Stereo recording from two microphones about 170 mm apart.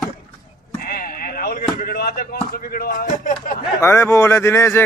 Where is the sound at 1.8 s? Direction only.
60° left (ahead or behind).